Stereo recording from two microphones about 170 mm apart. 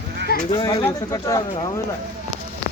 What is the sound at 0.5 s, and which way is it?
Speech, 20° left (ahead or behind).